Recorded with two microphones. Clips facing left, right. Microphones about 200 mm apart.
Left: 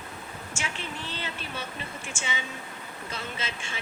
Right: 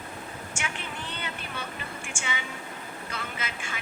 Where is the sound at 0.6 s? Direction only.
25° left (ahead or behind).